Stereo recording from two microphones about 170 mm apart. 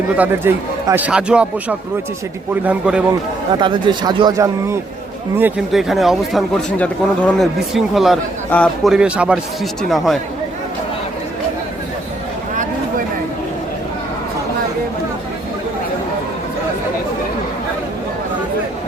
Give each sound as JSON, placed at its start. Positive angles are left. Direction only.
{"t": 0.2, "sound": "a man's voice", "side_deg": -10}
{"t": 2.6, "sound": "speech", "side_deg": -5}
{"t": 3.6, "sound": "speech", "side_deg": -25}
{"t": 5.4, "sound": "speech", "side_deg": -5}